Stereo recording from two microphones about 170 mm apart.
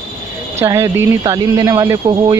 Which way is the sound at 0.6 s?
15° right (ahead or behind).